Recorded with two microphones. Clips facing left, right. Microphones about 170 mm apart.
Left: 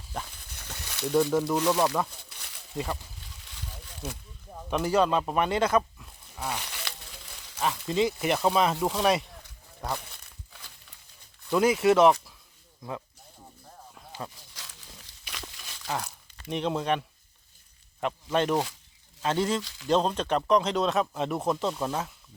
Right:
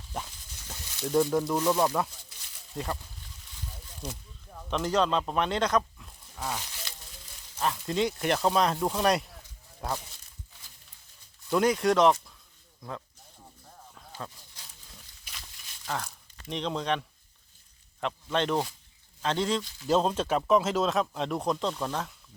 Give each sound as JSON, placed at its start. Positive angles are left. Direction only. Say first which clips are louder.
{"t": 0.3, "sound": "a sound", "louder": "left 2 dB", "side_deg": 60}
{"t": 1.1, "sound": "speech", "louder": "left 1 dB", "side_deg": 0}
{"t": 2.3, "sound": "a sound", "louder": "left 6 dB", "side_deg": 65}
{"t": 2.7, "sound": "speech", "louder": "left 2 dB", "side_deg": 5}
{"t": 4.0, "sound": "speech", "louder": "left 1 dB", "side_deg": 5}
{"t": 6.6, "sound": "a sound", "louder": "left 4 dB", "side_deg": 70}
{"t": 7.6, "sound": "speech", "louder": "left 2 dB", "side_deg": 0}
{"t": 10.1, "sound": "crumpling", "louder": "left 3 dB", "side_deg": 60}
{"t": 11.5, "sound": "speech", "louder": "left 2 dB", "side_deg": 5}
{"t": 13.9, "sound": "a sound", "louder": "left 2 dB", "side_deg": 5}
{"t": 14.5, "sound": "crumpling", "louder": "left 4 dB", "side_deg": 90}
{"t": 15.9, "sound": "speech", "louder": "left 2 dB", "side_deg": 5}
{"t": 18.0, "sound": "speech", "louder": "left 2 dB", "side_deg": 5}
{"t": 19.9, "sound": "speech", "louder": "even", "side_deg": -5}